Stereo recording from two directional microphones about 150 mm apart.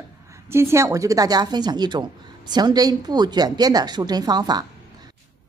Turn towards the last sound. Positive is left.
turn(degrees=-25)  # may be behind; listen again after turning